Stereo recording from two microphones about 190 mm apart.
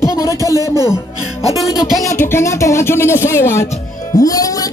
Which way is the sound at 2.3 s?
15° left (ahead or behind).